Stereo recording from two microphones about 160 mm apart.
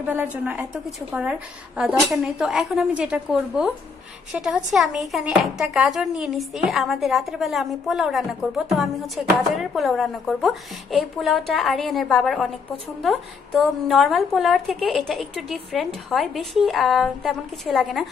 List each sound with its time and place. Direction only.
0.0 s a woman's voice: 10° right (ahead or behind)